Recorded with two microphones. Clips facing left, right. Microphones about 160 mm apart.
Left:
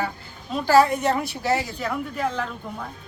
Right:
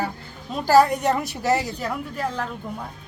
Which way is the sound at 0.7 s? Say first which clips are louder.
Right 1 dB; 40° right (ahead or behind).